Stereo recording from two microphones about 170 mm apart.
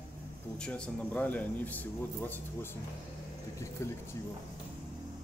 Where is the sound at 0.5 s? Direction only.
5° left (ahead or behind).